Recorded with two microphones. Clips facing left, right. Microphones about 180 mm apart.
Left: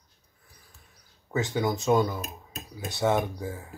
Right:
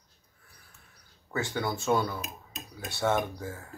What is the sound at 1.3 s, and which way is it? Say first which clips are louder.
Speech: left 4 dB; 20° left (ahead or behind).